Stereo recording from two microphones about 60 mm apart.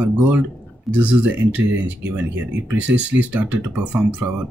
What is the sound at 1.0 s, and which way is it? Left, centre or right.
Speech, right.